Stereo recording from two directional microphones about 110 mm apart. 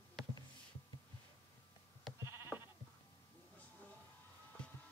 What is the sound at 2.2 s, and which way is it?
Sheep, 20° right (ahead or behind).